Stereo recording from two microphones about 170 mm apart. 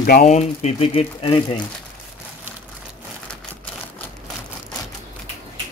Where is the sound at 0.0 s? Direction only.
60° left (ahead or behind).